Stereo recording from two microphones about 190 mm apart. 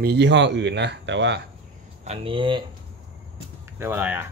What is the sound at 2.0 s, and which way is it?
Speech, 30° right (ahead or behind).